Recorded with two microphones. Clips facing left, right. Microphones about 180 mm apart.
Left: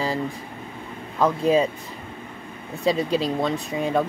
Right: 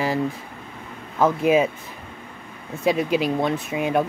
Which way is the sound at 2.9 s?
20° right (ahead or behind).